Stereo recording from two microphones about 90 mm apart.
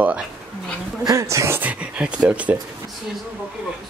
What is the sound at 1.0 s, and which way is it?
Speech, 35° right (ahead or behind).